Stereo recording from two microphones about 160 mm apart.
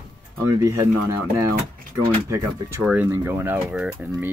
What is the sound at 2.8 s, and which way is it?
Speech, 10° right (ahead or behind).